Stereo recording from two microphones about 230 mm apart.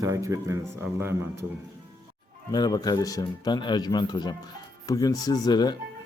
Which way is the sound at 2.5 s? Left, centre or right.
Centre.